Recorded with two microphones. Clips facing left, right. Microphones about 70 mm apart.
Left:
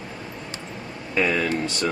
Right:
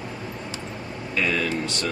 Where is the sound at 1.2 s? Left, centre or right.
Centre.